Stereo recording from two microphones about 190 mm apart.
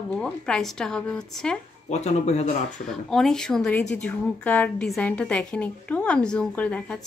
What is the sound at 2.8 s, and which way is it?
Speech, centre (ahead or behind).